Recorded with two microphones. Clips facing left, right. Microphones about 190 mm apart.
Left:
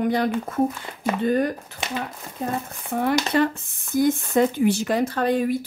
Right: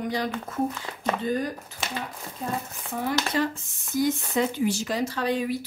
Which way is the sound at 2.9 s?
60° left (ahead or behind).